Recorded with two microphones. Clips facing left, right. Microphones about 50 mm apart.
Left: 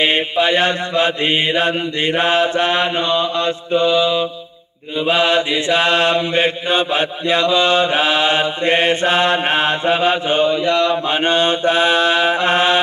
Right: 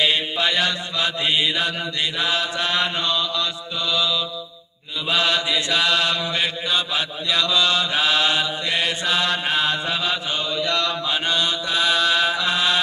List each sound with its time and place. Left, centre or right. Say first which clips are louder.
0.0 s mantra: left 5 dB; left